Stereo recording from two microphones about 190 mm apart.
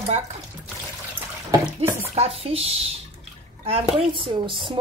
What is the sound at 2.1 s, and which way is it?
Speech, 30° right (ahead or behind).